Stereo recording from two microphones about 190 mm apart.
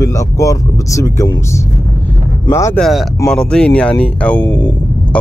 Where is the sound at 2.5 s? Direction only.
15° left (ahead or behind).